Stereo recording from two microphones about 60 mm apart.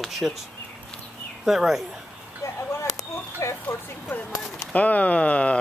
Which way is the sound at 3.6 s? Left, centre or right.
Left.